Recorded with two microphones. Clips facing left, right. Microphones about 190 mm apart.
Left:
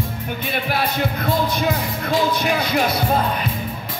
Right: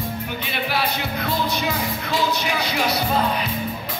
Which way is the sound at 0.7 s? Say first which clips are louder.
Left 3 dB; 50° left (ahead or behind).